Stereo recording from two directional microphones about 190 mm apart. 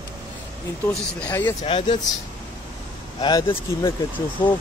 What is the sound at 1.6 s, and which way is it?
Speech, 35° left (ahead or behind).